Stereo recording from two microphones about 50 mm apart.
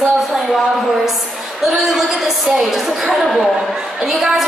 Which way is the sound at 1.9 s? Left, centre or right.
Centre.